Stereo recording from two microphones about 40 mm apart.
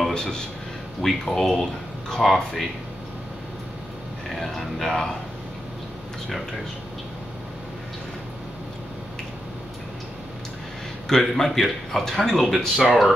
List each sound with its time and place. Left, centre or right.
0.1 s speech: centre
1.0 s a man's voice: centre
4.3 s speech: centre
4.8 s a man's voice: centre
11.1 s a man's voice: centre